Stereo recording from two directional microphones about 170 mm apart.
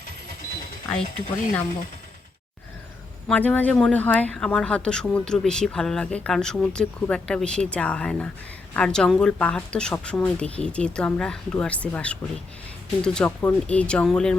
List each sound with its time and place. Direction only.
1.1 s speech: 50° left (ahead or behind)
3.2 s speech: 10° left (ahead or behind)